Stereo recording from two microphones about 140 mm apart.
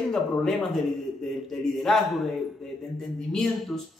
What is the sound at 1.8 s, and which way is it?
Speech, centre (ahead or behind).